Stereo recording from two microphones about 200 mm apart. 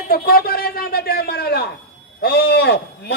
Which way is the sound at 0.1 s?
45° left (ahead or behind).